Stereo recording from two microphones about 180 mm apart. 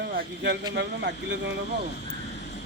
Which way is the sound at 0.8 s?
75° right (ahead or behind).